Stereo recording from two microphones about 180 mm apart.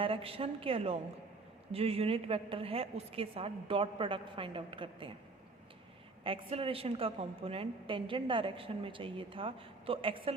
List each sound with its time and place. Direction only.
0.0 s a woman's voice: 30° right (ahead or behind)
6.2 s a woman's voice: 30° right (ahead or behind)